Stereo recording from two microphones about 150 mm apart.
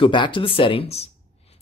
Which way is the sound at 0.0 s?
35° left (ahead or behind).